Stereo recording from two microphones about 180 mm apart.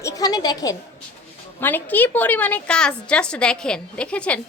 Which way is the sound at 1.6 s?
10° left (ahead or behind).